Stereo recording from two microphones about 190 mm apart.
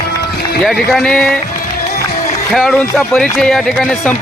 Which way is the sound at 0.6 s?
Centre (ahead or behind).